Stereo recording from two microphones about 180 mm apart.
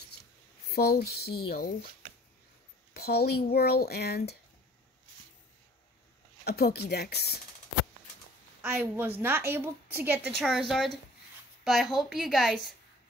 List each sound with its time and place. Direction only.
0.7 s speech: 60° left (ahead or behind)
2.9 s speech: 60° left (ahead or behind)
6.4 s speech: 60° left (ahead or behind)
8.6 s a woman's voice: 10° right (ahead or behind)
10.3 s a woman's voice: centre (ahead or behind)